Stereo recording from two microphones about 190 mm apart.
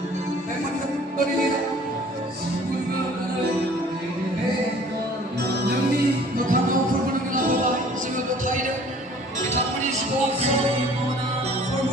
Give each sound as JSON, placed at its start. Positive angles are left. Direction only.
{"t": 6.3, "sound": "music", "side_deg": -45}
{"t": 8.4, "sound": "music", "side_deg": -45}